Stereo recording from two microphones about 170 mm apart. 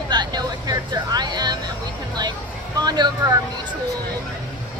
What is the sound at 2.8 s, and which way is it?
Speech, 25° right (ahead or behind).